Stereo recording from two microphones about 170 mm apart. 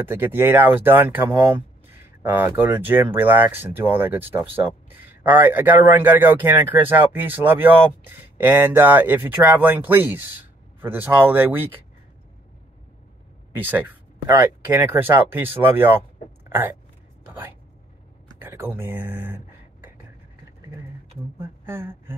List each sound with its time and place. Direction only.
0.0 s speech: 10° right (ahead or behind)
13.6 s speech: 10° right (ahead or behind)
16.4 s a sound: 15° right (ahead or behind)
18.4 s speech: 10° right (ahead or behind)
21.4 s speech: 15° right (ahead or behind)